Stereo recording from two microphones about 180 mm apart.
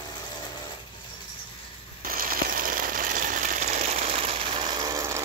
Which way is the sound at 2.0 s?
55° right (ahead or behind).